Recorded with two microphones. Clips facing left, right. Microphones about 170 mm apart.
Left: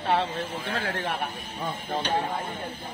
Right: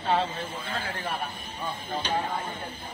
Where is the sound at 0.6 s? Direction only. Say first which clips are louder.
Left 4 dB; 80° left.